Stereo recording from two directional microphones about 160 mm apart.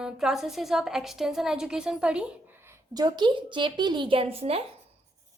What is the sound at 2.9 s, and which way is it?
A woman's voice, 25° right (ahead or behind).